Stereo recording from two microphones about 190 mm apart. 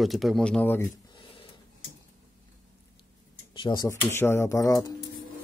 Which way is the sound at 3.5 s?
25° left (ahead or behind).